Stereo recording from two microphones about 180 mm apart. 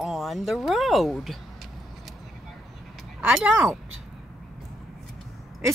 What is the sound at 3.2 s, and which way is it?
Speech, 10° right (ahead or behind).